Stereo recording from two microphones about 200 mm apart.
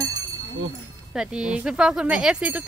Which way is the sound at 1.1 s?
5° right (ahead or behind).